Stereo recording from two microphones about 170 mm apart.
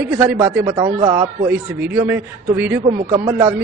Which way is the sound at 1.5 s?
10° right (ahead or behind).